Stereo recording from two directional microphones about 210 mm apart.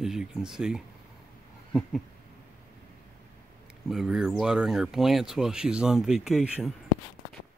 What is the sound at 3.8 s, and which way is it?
Speech, centre (ahead or behind).